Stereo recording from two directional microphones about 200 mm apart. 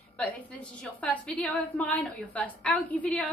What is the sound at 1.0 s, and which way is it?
A woman's voice, 5° left (ahead or behind).